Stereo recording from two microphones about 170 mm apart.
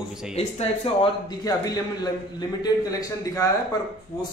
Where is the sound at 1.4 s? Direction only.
20° left (ahead or behind).